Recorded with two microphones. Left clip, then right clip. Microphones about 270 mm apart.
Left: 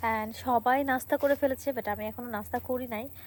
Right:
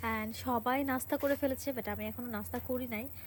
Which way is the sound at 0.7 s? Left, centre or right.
Centre.